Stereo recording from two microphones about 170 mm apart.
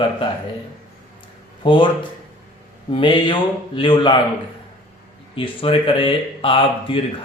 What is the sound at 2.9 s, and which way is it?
Speech, 30° left (ahead or behind).